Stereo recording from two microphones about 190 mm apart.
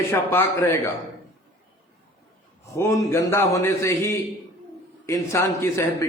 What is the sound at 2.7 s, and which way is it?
A man's voice, 15° left (ahead or behind).